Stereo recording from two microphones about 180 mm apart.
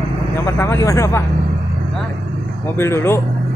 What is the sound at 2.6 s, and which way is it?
Speech, 15° left (ahead or behind).